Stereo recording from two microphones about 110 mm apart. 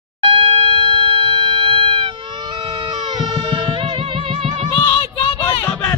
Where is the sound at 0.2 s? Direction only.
50° right (ahead or behind).